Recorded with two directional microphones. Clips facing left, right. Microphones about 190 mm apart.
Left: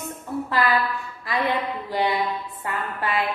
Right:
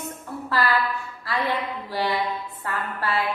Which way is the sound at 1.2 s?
20° left (ahead or behind).